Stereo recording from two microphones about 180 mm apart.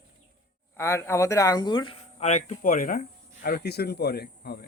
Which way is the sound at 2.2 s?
40° left (ahead or behind).